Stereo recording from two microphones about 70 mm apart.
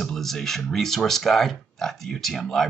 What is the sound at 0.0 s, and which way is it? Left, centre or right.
Speech, centre.